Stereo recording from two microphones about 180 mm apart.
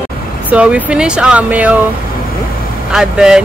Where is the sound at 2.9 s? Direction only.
5° right (ahead or behind).